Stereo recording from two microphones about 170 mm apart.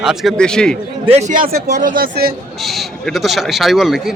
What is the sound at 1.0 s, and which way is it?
Speech, 40° right (ahead or behind).